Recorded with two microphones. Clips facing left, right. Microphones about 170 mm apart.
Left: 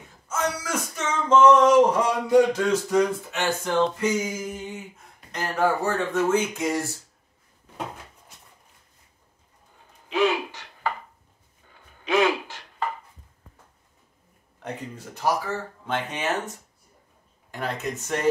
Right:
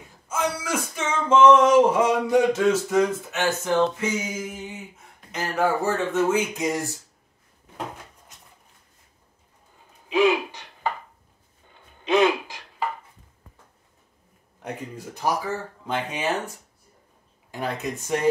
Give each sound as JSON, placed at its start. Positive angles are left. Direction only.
{"t": 0.3, "sound": "a sound", "side_deg": -10}
{"t": 1.5, "sound": "speech", "side_deg": -5}
{"t": 5.3, "sound": "speech", "side_deg": -5}
{"t": 10.0, "sound": "gasp", "side_deg": -15}
{"t": 12.0, "sound": "gasp", "side_deg": -20}
{"t": 14.6, "sound": "speech", "side_deg": -15}